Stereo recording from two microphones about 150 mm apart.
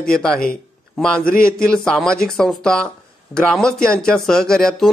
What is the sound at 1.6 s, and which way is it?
Speech, 5° left (ahead or behind).